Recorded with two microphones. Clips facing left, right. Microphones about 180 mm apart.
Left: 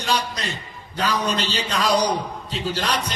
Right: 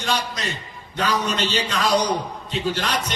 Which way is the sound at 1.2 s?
35° left (ahead or behind).